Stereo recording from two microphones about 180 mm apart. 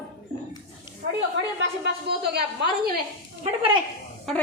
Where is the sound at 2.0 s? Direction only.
65° right (ahead or behind).